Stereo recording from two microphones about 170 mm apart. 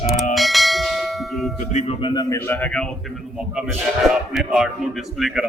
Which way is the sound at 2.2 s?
15° left (ahead or behind).